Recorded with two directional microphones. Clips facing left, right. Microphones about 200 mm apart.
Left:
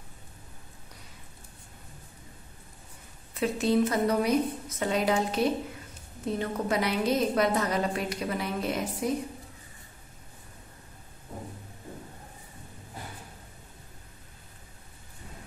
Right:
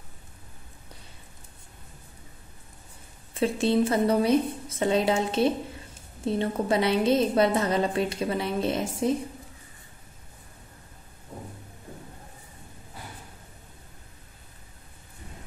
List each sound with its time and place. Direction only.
3.3 s a woman's voice: 30° right (ahead or behind)